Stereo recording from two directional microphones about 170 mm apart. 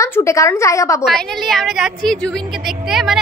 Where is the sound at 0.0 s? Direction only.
15° left (ahead or behind).